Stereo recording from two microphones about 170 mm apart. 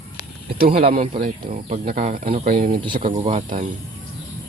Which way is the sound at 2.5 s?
55° right (ahead or behind).